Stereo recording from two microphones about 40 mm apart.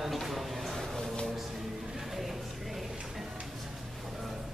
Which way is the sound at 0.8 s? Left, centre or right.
Centre.